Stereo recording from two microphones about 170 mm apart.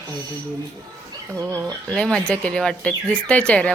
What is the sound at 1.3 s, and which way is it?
Speech, 20° right (ahead or behind).